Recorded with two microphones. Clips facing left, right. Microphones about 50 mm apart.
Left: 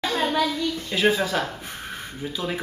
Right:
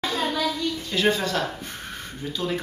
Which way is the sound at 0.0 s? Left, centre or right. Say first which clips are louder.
Left 2 dB; left.